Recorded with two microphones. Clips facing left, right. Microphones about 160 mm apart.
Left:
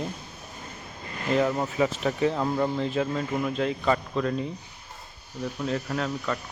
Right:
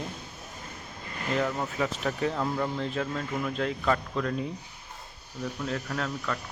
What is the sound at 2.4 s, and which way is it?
Speech, 15° left (ahead or behind).